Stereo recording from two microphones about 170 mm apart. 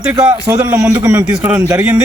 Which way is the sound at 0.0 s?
15° right (ahead or behind).